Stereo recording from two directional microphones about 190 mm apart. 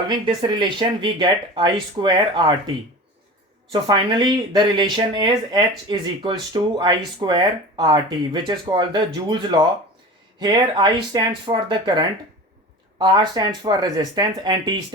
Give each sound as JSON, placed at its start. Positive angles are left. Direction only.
{"t": 0.1, "sound": "speech", "side_deg": -25}
{"t": 3.7, "sound": "speech", "side_deg": -25}